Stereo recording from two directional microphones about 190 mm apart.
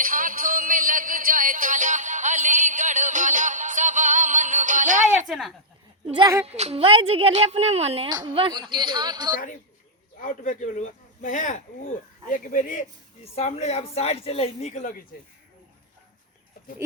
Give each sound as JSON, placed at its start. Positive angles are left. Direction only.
{"t": 0.0, "sound": "music", "side_deg": -45}
{"t": 5.3, "sound": "speech", "side_deg": 0}
{"t": 6.1, "sound": "a woman's voice", "side_deg": -25}
{"t": 10.2, "sound": "speech", "side_deg": 40}